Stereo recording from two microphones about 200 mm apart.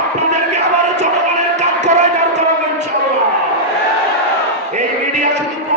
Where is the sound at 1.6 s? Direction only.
35° right (ahead or behind).